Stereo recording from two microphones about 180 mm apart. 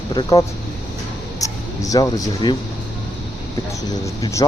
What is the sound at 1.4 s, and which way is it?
Speech, 20° left (ahead or behind).